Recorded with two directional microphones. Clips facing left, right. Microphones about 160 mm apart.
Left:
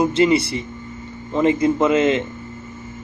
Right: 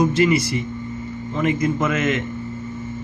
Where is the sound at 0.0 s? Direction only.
30° left (ahead or behind).